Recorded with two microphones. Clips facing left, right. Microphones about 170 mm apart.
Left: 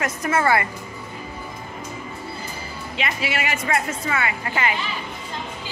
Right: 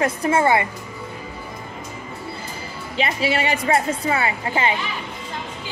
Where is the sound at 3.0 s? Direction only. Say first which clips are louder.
Right 5 dB; 30° right (ahead or behind).